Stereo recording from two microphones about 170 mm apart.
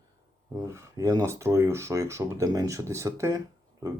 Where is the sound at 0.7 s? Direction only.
15° right (ahead or behind).